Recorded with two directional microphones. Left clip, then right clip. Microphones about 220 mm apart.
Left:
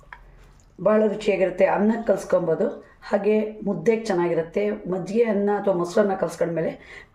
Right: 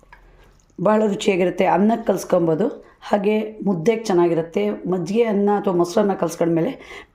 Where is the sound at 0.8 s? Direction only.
45° right (ahead or behind).